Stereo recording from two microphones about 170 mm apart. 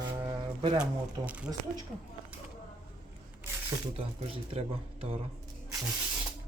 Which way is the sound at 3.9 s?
35° right (ahead or behind).